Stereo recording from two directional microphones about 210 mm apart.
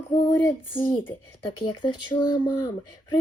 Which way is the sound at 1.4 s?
20° left (ahead or behind).